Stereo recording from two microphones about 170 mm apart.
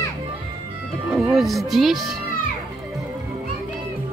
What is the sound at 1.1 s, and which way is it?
Speech, centre (ahead or behind).